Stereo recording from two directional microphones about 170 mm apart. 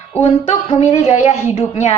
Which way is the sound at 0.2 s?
35° left (ahead or behind).